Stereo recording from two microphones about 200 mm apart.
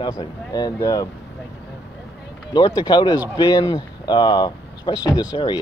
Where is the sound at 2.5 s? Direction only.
20° left (ahead or behind).